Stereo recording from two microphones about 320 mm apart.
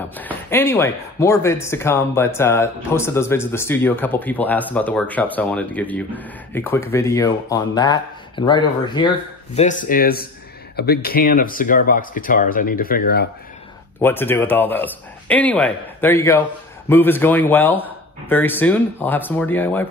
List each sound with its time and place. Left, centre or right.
0.2 s speech: centre; by 13.3 s left
14.0 s speech: centre